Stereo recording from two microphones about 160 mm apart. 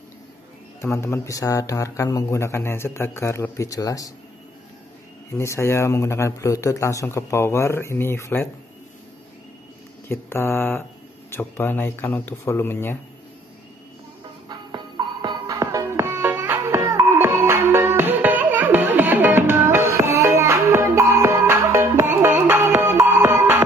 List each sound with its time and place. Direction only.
0.7 s speech: 15° left (ahead or behind)
5.3 s speech: 15° left (ahead or behind)
10.0 s speech: 15° left (ahead or behind)
15.2 s music: 20° right (ahead or behind)